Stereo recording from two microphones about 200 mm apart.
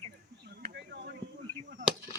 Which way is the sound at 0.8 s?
60° right (ahead or behind).